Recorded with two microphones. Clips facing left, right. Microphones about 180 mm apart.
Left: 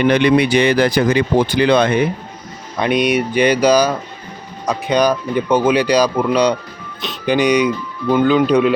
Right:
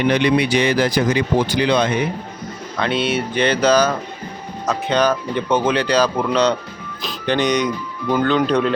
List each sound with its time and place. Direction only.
0.1 s speech: 60° left (ahead or behind)
2.7 s speech: 15° left (ahead or behind)